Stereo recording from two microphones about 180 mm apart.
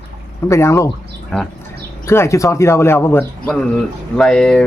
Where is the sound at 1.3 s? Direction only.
5° left (ahead or behind).